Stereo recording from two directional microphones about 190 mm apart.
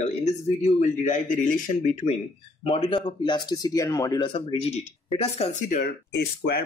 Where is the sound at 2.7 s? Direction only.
30° left (ahead or behind).